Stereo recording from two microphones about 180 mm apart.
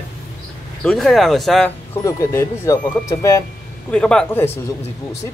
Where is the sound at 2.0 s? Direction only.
15° left (ahead or behind).